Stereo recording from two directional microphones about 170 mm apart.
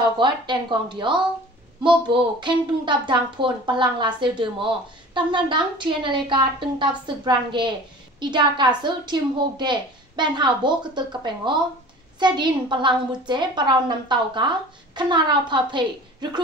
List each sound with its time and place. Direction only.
0.2 s speech: 25° right (ahead or behind)